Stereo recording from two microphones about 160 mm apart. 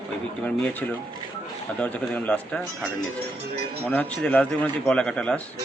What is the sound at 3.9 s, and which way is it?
A man's voice, 10° left (ahead or behind).